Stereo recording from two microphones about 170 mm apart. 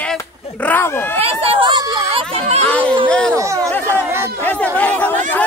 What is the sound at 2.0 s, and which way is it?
Speech, 35° right (ahead or behind).